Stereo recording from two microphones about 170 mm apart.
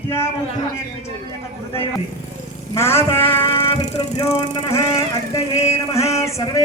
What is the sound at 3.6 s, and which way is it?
Vehicle, 25° left (ahead or behind).